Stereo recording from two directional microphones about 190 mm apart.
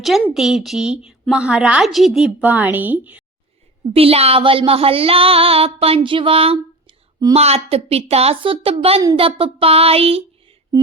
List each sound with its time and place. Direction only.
0.0 s a woman's voice: centre (ahead or behind)
3.9 s music: 30° right (ahead or behind)
7.3 s a woman's voice: 35° right (ahead or behind)